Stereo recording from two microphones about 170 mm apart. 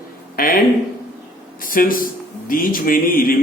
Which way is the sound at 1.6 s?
55° left (ahead or behind).